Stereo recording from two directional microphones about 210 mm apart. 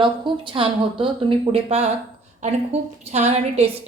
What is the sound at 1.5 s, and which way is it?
Speech, 30° right (ahead or behind).